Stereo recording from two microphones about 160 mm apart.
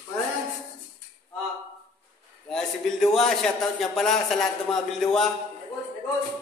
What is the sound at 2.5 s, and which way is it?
A man's voice, 5° left (ahead or behind).